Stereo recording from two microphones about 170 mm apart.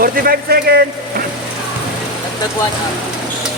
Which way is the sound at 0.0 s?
60° right (ahead or behind).